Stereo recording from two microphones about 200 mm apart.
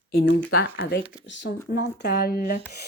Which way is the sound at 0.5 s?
55° left (ahead or behind).